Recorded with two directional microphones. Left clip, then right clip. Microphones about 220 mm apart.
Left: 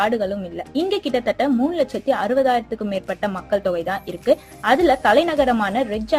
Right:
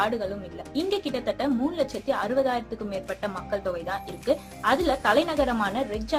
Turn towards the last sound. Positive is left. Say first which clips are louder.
# left 6 dB
turn(degrees=25)  # may be behind; listen again after turning